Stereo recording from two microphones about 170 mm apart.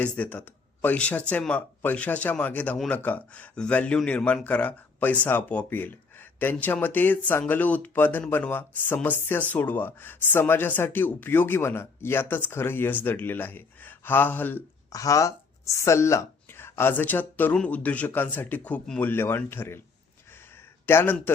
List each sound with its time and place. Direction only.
0.0 s speech: 10° left (ahead or behind)
20.8 s speech: 15° left (ahead or behind)